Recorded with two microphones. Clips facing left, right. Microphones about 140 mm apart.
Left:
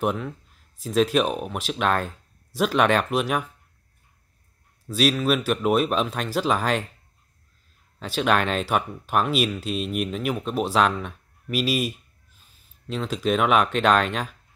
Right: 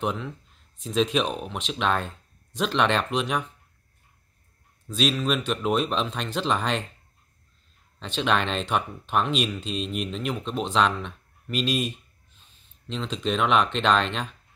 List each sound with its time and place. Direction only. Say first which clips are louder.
0.0 s speech: left 3 dB; 5° left (ahead or behind)
4.8 s speech: left 3 dB; 5° left (ahead or behind)
8.0 s speech: left 3 dB; 5° left (ahead or behind)